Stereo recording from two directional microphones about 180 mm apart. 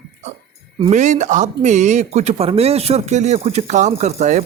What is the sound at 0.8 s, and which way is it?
Speech, 40° right (ahead or behind).